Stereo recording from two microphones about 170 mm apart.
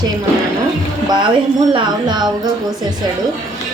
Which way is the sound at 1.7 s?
25° right (ahead or behind).